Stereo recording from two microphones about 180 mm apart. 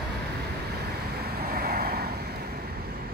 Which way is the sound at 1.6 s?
55° right (ahead or behind).